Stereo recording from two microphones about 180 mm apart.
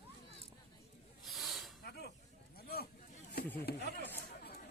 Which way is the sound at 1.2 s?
Centre (ahead or behind).